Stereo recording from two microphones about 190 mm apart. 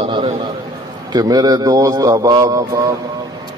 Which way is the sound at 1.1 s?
20° right (ahead or behind).